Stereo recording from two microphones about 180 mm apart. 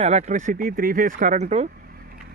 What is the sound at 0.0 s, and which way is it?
Speech, 40° right (ahead or behind).